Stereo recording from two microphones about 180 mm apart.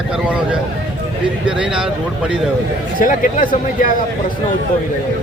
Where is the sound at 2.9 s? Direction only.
50° left (ahead or behind).